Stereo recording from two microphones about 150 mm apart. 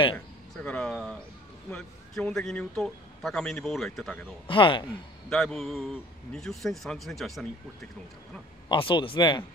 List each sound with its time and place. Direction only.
0.6 s a man's voice: 5° left (ahead or behind)
4.5 s speech: 35° left (ahead or behind)
5.3 s a man's voice: 5° left (ahead or behind)
8.6 s speech: 35° left (ahead or behind)